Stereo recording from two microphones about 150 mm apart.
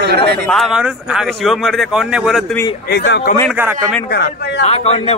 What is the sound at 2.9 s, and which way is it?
Speech, 90° left.